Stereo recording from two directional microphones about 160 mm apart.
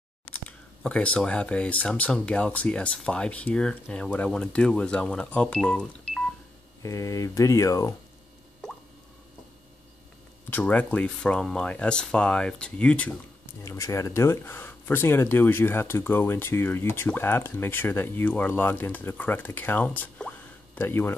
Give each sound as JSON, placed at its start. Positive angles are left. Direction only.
{"t": 0.3, "sound": "speech", "side_deg": 10}
{"t": 6.8, "sound": "speech", "side_deg": 20}
{"t": 10.5, "sound": "speech", "side_deg": 10}
{"t": 13.7, "sound": "speech", "side_deg": 20}